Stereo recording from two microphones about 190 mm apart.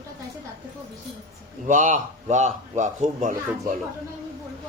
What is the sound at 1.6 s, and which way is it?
Speech, 40° right (ahead or behind).